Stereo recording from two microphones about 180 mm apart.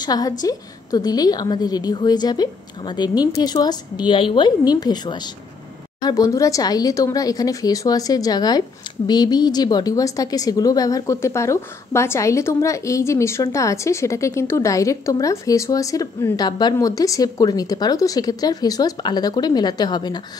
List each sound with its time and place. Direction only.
0.0 s speech: 20° left (ahead or behind)